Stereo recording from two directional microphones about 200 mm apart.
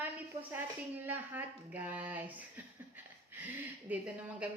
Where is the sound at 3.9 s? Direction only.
10° right (ahead or behind).